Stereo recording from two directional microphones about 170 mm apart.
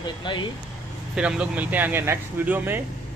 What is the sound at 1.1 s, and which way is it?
Speech, 5° right (ahead or behind).